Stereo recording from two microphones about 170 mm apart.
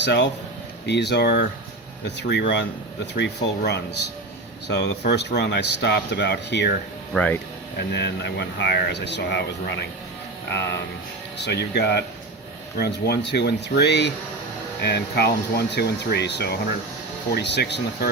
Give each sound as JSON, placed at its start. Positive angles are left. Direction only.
{"t": 0.0, "sound": "speech", "side_deg": 90}
{"t": 7.1, "sound": "speech", "side_deg": 10}
{"t": 7.8, "sound": "speech", "side_deg": 80}
{"t": 11.3, "sound": "speech", "side_deg": 85}